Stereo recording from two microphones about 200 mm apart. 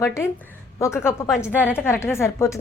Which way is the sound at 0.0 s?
15° left (ahead or behind).